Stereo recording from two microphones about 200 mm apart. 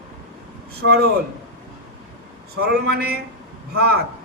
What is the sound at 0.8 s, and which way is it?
Speech, 50° right (ahead or behind).